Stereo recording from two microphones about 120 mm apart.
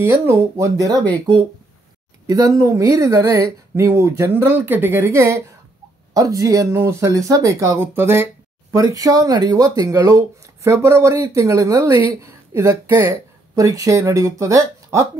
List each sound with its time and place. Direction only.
0.0 s speech: 20° right (ahead or behind)
2.2 s speech: 30° right (ahead or behind)